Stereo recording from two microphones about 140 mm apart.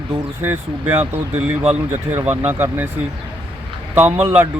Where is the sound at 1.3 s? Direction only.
10° right (ahead or behind).